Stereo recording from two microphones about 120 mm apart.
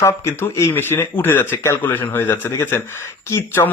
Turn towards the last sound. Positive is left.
turn(degrees=20)  # may be behind; listen again after turning